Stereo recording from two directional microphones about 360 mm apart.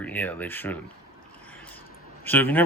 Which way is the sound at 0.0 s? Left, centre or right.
Centre.